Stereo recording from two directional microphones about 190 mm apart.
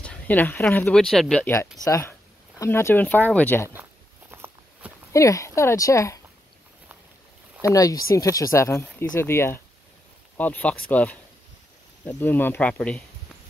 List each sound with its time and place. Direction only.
0.0 s speech: 5° left (ahead or behind)
1.9 s speech: 15° left (ahead or behind)
4.3 s walk: 10° right (ahead or behind)
5.1 s speech: 15° left (ahead or behind)
7.7 s speech: 20° left (ahead or behind)